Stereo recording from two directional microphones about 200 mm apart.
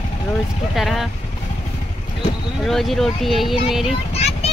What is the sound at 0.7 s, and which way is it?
Speech, centre (ahead or behind).